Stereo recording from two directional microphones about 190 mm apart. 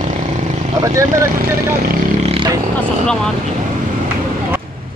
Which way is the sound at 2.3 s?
25° right (ahead or behind).